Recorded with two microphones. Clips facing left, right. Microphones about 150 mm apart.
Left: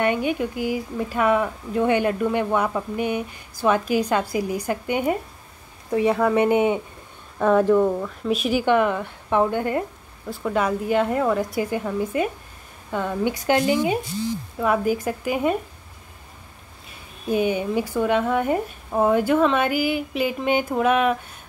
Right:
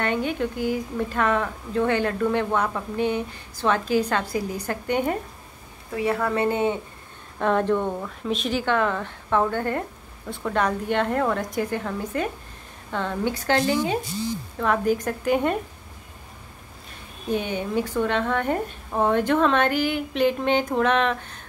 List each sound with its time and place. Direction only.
0.0 s speech: 10° left (ahead or behind)
17.3 s speech: 10° left (ahead or behind)